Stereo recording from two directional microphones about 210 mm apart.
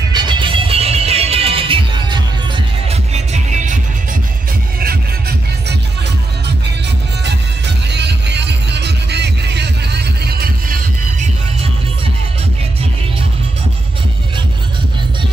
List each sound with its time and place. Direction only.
0.1 s music: 20° right (ahead or behind)
7.2 s music: 55° right (ahead or behind)